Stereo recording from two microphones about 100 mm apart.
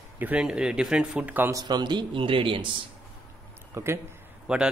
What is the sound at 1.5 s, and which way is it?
A man's voice, 40° right (ahead or behind).